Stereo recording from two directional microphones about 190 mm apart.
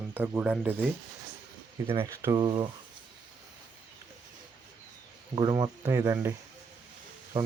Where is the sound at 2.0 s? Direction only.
20° right (ahead or behind).